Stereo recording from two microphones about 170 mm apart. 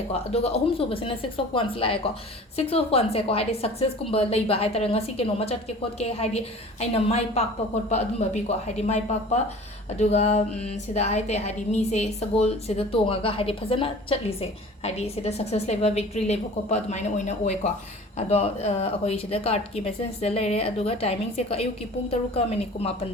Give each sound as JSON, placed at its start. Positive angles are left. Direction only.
{"t": 0.3, "sound": "a woman's voice", "side_deg": 35}